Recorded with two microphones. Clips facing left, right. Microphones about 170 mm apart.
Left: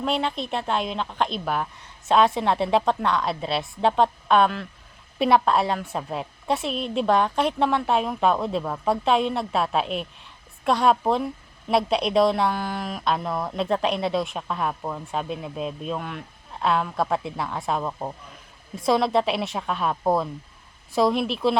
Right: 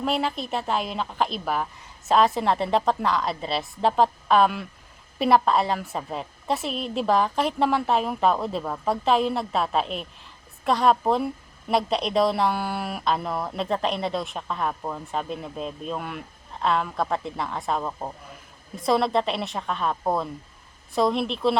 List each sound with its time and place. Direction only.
0.0 s speech: 5° right (ahead or behind)